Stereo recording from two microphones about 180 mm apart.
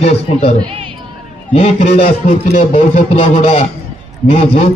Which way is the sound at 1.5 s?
35° left (ahead or behind).